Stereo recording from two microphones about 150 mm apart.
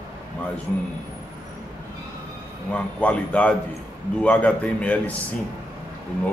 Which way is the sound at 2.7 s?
10° left (ahead or behind).